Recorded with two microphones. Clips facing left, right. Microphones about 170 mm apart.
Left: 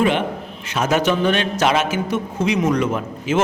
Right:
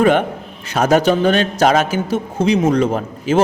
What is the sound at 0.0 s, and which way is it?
A man's voice, 45° right (ahead or behind).